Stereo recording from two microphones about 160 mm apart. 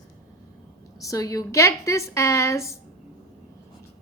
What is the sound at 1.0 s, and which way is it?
A woman's voice, 20° left (ahead or behind).